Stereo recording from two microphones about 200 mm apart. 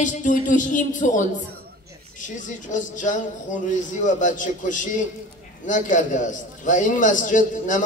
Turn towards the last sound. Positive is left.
turn(degrees=40)  # may be behind; listen again after turning